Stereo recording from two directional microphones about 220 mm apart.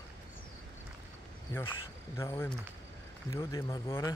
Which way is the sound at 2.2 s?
10° left (ahead or behind).